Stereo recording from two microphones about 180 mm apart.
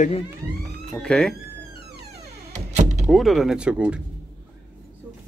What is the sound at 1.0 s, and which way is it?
Speech, 5° left (ahead or behind).